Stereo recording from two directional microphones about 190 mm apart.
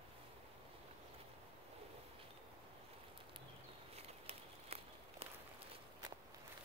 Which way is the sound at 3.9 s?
30° right (ahead or behind).